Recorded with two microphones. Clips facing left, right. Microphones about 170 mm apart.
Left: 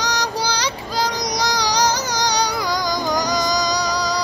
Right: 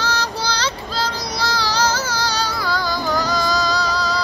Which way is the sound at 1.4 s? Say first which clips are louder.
Even; 15° left (ahead or behind).